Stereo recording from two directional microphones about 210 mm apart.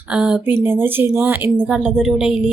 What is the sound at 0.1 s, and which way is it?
A woman's voice, 5° right (ahead or behind).